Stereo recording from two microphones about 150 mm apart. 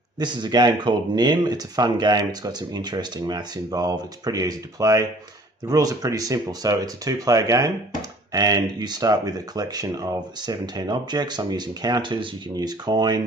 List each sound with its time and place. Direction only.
0.2 s speech: 30° right (ahead or behind)